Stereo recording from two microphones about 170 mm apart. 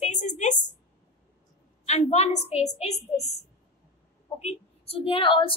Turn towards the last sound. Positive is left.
turn(degrees=30)  # may be behind; listen again after turning